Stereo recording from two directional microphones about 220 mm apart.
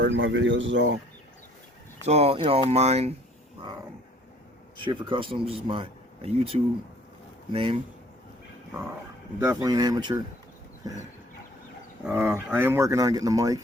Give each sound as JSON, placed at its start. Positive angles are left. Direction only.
{"t": 0.0, "sound": "speech", "side_deg": -55}
{"t": 2.0, "sound": "speech", "side_deg": -30}
{"t": 4.8, "sound": "speech", "side_deg": -20}
{"t": 9.4, "sound": "speech", "side_deg": -15}
{"t": 12.0, "sound": "speech", "side_deg": -10}